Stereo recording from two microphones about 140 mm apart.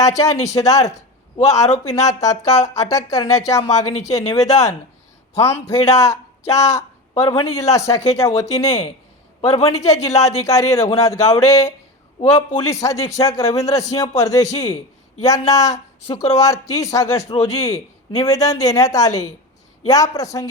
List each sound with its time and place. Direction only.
0.0 s speech: 25° left (ahead or behind)
5.9 s speech: 20° left (ahead or behind)